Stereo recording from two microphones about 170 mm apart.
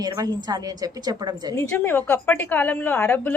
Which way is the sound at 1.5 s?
15° left (ahead or behind).